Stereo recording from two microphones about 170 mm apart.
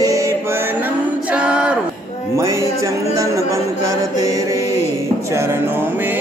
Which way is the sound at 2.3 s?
20° right (ahead or behind).